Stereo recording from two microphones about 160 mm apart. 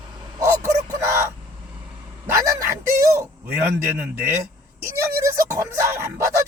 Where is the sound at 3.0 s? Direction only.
15° right (ahead or behind).